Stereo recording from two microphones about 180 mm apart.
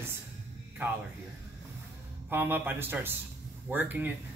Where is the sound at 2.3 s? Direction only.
10° right (ahead or behind).